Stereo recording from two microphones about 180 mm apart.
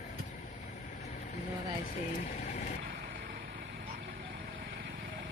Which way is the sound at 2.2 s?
45° left (ahead or behind).